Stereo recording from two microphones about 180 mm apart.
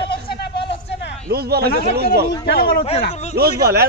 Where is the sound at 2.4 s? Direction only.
60° left (ahead or behind).